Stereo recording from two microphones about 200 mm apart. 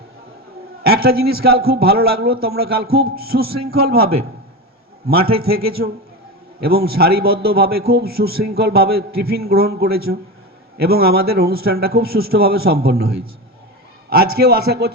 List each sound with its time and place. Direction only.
0.9 s a man's voice: 50° right (ahead or behind)